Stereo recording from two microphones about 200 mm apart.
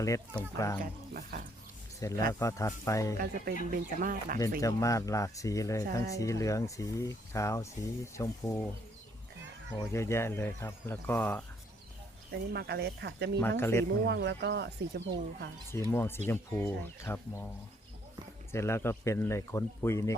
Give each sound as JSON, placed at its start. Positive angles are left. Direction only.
{"t": 0.0, "sound": "speech", "side_deg": 15}
{"t": 0.8, "sound": "speech", "side_deg": -45}
{"t": 2.0, "sound": "speech", "side_deg": 15}
{"t": 3.2, "sound": "speech", "side_deg": -45}
{"t": 4.6, "sound": "speech", "side_deg": 15}
{"t": 9.9, "sound": "speech", "side_deg": 15}
{"t": 12.3, "sound": "speech", "side_deg": -55}
{"t": 13.6, "sound": "speech", "side_deg": 10}
{"t": 14.0, "sound": "speech", "side_deg": -60}
{"t": 15.7, "sound": "speech", "side_deg": 10}
{"t": 18.5, "sound": "speech", "side_deg": 15}